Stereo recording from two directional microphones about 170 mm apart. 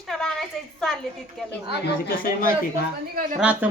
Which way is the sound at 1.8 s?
55° left (ahead or behind).